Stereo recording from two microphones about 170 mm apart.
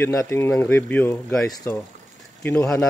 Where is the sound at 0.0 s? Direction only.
15° left (ahead or behind).